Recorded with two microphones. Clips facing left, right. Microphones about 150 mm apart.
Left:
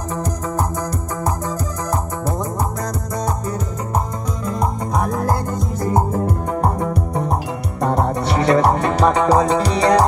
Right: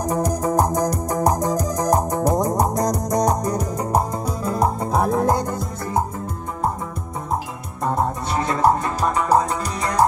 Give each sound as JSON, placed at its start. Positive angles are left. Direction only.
{"t": 0.6, "sound": "music", "side_deg": -15}
{"t": 4.9, "sound": "music", "side_deg": -30}
{"t": 7.8, "sound": "music", "side_deg": 75}